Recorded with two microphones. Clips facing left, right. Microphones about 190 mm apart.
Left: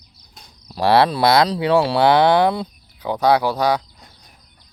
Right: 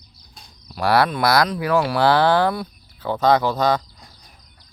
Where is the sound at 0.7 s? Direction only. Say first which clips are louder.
Left 3 dB; 25° left (ahead or behind).